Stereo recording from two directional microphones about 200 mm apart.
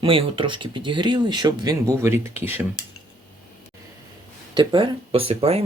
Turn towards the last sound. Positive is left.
turn(degrees=-30)  # may be behind; listen again after turning